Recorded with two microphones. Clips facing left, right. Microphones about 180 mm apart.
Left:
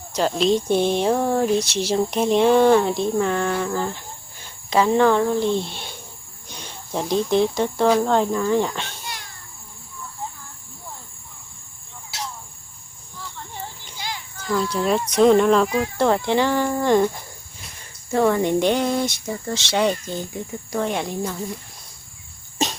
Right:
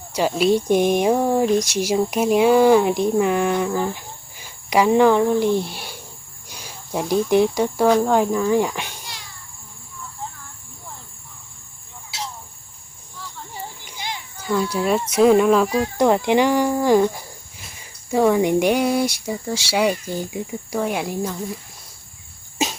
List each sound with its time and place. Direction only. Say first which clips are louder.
0.1 s speech: right 1 dB; 10° right (ahead or behind)
13.8 s children playing: right 1 dB; 15° right (ahead or behind)
14.4 s speech: right 1 dB; 10° right (ahead or behind)
16.0 s speech: right 3 dB; 15° right (ahead or behind); by 21.6 s centre (ahead or behind)
22.6 s cough: even; 5° right (ahead or behind)